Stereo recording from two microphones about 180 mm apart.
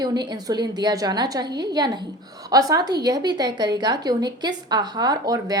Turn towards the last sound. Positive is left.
turn(degrees=-20)  # may be behind; listen again after turning